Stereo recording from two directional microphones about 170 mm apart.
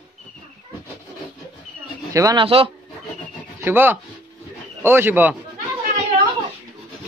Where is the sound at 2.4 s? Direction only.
35° right (ahead or behind).